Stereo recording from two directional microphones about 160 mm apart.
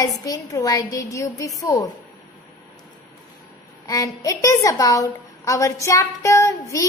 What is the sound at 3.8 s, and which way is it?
A woman's voice, 20° left (ahead or behind).